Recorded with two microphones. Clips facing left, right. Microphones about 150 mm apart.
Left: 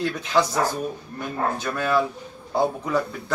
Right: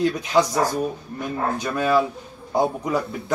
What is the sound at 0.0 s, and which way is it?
Speech, 15° right (ahead or behind).